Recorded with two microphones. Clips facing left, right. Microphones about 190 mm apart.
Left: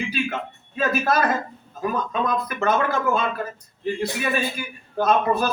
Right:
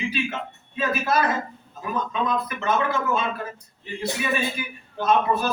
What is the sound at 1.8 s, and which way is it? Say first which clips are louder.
Speech: left 2 dB; 45° left (ahead or behind).